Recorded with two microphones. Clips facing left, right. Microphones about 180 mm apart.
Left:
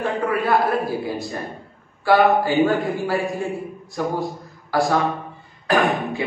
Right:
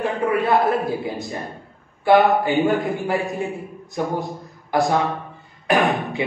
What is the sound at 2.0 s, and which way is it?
A man's voice, 20° right (ahead or behind).